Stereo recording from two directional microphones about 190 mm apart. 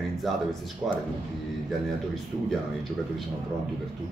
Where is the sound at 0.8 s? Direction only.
10° right (ahead or behind).